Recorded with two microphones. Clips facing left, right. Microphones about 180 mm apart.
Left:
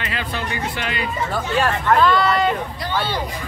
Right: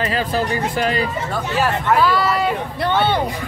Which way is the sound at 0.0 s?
40° right (ahead or behind).